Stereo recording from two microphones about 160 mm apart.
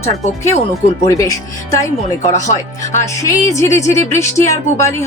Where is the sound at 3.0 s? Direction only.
20° left (ahead or behind).